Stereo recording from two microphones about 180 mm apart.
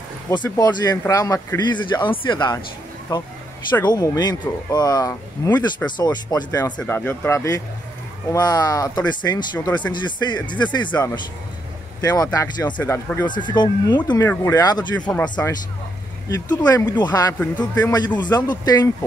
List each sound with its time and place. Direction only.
0.6 s speech: 20° left (ahead or behind)
6.8 s speech: 10° left (ahead or behind)
13.3 s speech: 25° left (ahead or behind)
15.0 s speech: 5° left (ahead or behind)
16.3 s speech: 20° left (ahead or behind)